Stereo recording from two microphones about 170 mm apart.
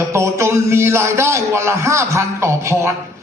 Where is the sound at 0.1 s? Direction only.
15° right (ahead or behind).